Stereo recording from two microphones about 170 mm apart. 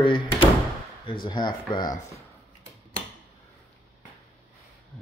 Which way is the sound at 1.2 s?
25° left (ahead or behind).